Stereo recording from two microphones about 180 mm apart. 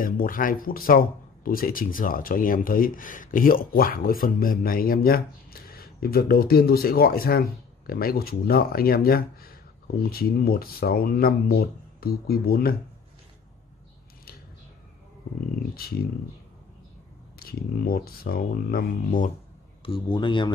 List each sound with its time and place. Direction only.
0.0 s speech: 50° left (ahead or behind)
15.7 s speech: 55° left (ahead or behind)
17.4 s speech: 55° left (ahead or behind)
19.8 s speech: 25° left (ahead or behind)